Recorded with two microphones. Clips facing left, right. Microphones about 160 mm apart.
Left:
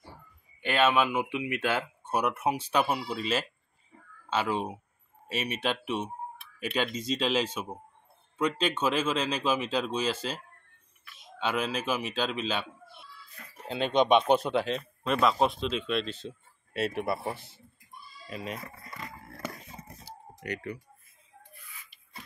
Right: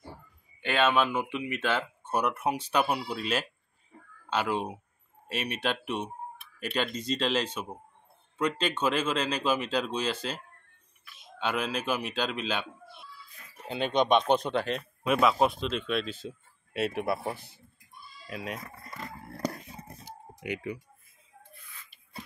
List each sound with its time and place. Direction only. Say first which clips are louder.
0.6 s speech: left 1 dB; 5° left (ahead or behind)
13.7 s speech: left 1 dB; 5° left (ahead or behind)
19.3 s a sound: right 8 dB; 35° right (ahead or behind)
20.3 s speech: right 1 dB; 10° right (ahead or behind)